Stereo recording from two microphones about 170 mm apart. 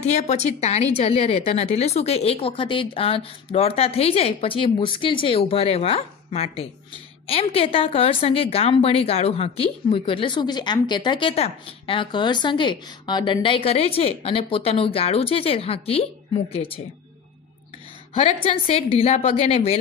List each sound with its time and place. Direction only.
0.0 s a woman's voice: 40° left (ahead or behind)
18.1 s a woman's voice: 45° left (ahead or behind)